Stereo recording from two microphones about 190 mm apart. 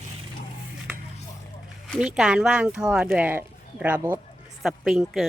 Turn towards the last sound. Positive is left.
turn(degrees=0)  # may be behind; listen again after turning